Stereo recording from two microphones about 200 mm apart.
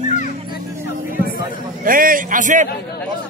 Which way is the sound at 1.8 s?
45° right (ahead or behind).